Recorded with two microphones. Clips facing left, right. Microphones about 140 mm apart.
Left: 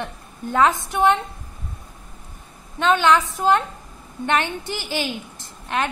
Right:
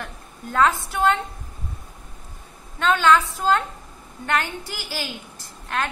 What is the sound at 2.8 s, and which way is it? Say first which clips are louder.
A woman's voice: left 1 dB; 15° left (ahead or behind).